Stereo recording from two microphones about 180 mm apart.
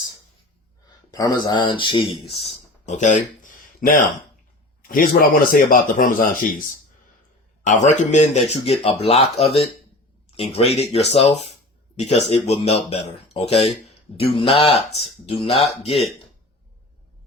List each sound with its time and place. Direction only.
1.1 s speech: 20° left (ahead or behind)
2.8 s speech: 40° left (ahead or behind)